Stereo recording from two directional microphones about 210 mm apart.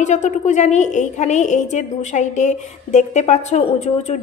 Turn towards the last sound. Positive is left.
turn(degrees=30)  # may be behind; listen again after turning